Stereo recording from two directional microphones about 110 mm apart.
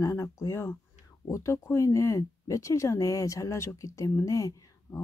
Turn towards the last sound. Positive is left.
turn(degrees=30)  # may be behind; listen again after turning